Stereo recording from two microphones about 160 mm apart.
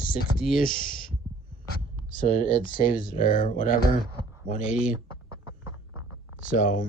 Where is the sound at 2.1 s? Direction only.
60° left (ahead or behind).